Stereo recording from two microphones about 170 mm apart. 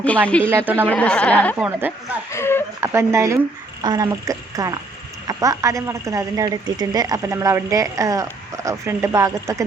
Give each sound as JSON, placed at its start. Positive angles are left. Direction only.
{"t": 0.4, "sound": "speech", "side_deg": -10}
{"t": 0.9, "sound": "speech", "side_deg": 5}
{"t": 1.5, "sound": "speech", "side_deg": -5}
{"t": 2.3, "sound": "speech", "side_deg": 15}
{"t": 2.8, "sound": "a woman's voice", "side_deg": -15}